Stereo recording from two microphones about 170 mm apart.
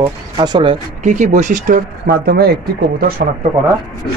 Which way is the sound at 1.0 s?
45° right (ahead or behind).